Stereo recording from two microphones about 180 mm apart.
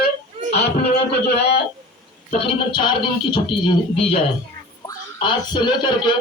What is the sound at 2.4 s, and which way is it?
Speech, 25° left (ahead or behind).